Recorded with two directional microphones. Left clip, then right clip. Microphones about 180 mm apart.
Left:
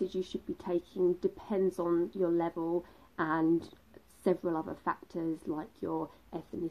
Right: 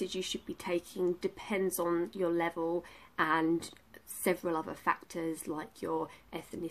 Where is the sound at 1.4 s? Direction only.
30° right (ahead or behind).